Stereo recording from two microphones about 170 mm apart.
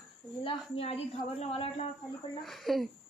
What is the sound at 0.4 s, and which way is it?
A woman's voice, 35° left (ahead or behind).